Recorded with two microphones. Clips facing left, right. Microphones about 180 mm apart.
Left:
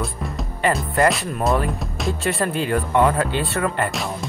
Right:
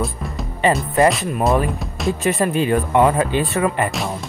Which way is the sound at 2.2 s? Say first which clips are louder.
Right 5 dB; 15° right (ahead or behind).